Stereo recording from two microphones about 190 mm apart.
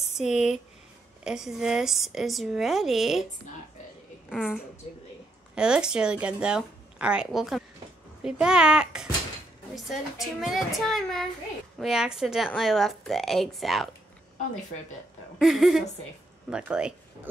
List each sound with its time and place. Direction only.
0.2 s speech: 35° left (ahead or behind)
1.2 s speech: centre (ahead or behind)
4.3 s a woman's voice: 5° right (ahead or behind)
15.3 s speech: centre (ahead or behind)